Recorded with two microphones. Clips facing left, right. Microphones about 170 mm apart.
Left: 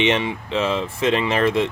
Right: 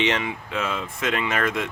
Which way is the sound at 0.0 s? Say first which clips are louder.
Left 4 dB; 25° left (ahead or behind).